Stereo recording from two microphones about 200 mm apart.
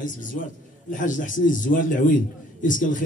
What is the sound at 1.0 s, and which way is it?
Speech, 40° left (ahead or behind).